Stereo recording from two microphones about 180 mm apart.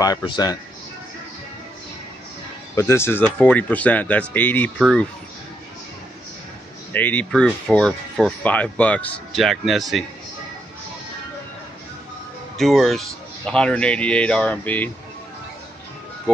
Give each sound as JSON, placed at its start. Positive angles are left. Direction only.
{"t": 0.0, "sound": "speech", "side_deg": 25}
{"t": 2.7, "sound": "speech", "side_deg": 15}
{"t": 6.9, "sound": "speech", "side_deg": 10}
{"t": 12.5, "sound": "speech", "side_deg": 0}